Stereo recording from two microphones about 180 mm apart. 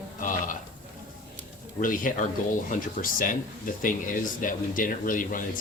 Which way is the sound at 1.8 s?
50° left (ahead or behind).